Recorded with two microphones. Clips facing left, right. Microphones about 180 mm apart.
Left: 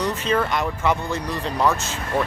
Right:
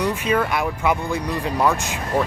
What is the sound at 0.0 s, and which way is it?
Speech, 10° right (ahead or behind).